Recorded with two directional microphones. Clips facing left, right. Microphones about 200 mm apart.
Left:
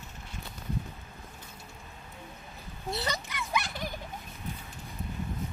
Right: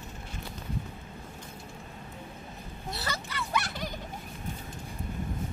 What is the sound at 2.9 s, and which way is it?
Speech, 20° left (ahead or behind).